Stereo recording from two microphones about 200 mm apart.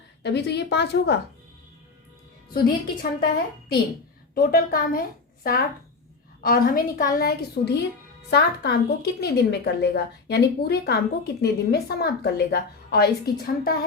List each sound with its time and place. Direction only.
0.2 s speech: 55° left (ahead or behind)
2.5 s speech: 50° left (ahead or behind)
4.4 s a woman's voice: 45° left (ahead or behind)